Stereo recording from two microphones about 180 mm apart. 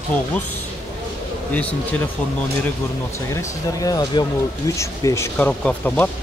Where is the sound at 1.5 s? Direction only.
5° left (ahead or behind).